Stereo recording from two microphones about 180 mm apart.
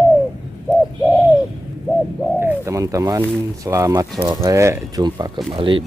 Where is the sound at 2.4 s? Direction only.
15° right (ahead or behind).